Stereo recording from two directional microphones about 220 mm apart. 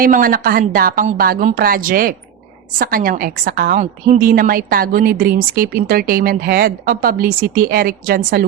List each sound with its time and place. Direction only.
0.0 s a woman's voice: 40° right (ahead or behind)